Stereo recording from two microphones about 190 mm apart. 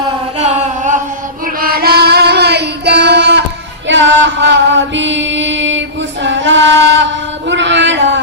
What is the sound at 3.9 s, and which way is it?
Chant, 75° right (ahead or behind).